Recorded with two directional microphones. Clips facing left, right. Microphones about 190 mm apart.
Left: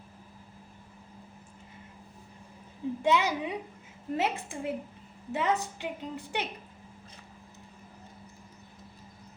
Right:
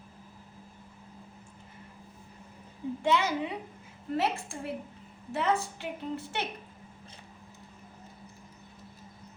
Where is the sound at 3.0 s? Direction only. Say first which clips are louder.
Left 1 dB; 15° left (ahead or behind).